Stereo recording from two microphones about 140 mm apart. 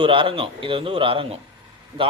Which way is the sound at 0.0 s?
40° right (ahead or behind).